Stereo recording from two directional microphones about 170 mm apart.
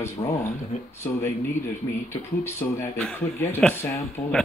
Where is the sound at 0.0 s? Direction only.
15° left (ahead or behind).